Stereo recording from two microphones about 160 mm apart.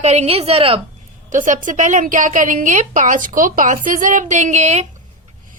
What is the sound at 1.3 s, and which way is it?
A woman's voice, 55° right (ahead or behind).